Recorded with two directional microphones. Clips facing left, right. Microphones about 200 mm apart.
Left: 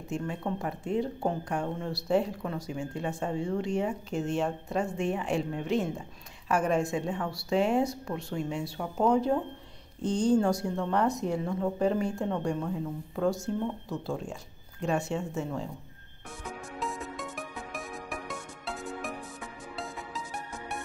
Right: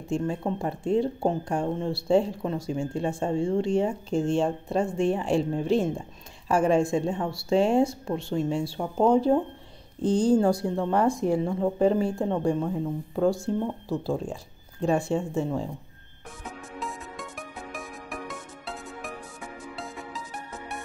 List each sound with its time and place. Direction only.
0.1 s a woman's voice: 30° right (ahead or behind)
16.8 s music: centre (ahead or behind)